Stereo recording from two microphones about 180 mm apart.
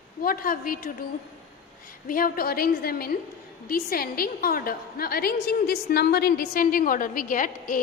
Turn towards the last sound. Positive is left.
turn(degrees=50)  # may be behind; listen again after turning